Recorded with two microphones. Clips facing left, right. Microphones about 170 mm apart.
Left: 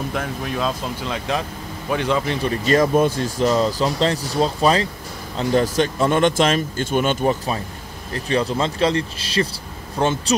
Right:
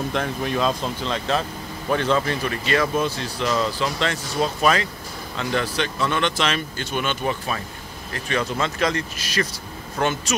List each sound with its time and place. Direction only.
0.1 s a man's voice: 5° left (ahead or behind)
2.4 s speech: 35° left (ahead or behind)